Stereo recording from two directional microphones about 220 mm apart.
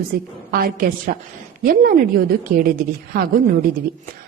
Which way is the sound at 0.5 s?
40° right (ahead or behind).